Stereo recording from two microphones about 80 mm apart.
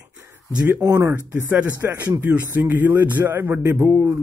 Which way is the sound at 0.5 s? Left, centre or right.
Right.